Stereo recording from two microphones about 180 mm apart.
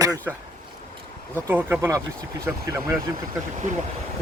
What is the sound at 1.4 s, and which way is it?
Speech, 10° right (ahead or behind).